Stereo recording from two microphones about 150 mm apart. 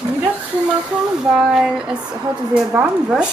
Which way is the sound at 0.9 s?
5° right (ahead or behind).